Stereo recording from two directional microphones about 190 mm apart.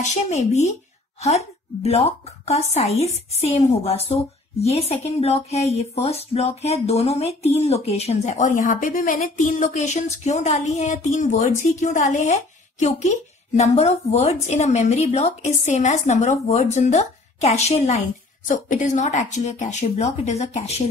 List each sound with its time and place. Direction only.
0.0 s a woman's voice: 35° left (ahead or behind)